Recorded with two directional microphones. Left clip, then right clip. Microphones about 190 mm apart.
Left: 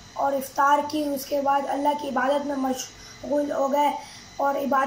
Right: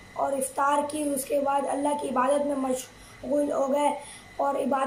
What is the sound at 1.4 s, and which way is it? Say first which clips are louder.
A woman's voice: left 7 dB; 15° right (ahead or behind).